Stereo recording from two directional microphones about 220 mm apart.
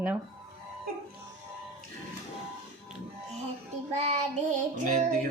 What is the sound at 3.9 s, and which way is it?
Child singing, 30° right (ahead or behind).